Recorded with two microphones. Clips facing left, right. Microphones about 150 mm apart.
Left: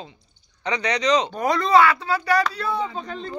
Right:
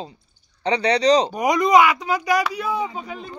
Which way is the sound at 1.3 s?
15° right (ahead or behind).